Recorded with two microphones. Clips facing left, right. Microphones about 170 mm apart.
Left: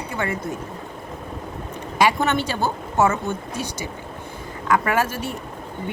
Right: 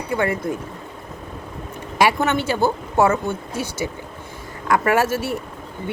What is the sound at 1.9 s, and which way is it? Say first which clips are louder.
Speech: right 1 dB; 10° right (ahead or behind).